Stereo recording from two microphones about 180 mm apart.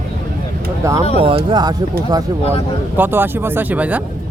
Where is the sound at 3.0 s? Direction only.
10° right (ahead or behind).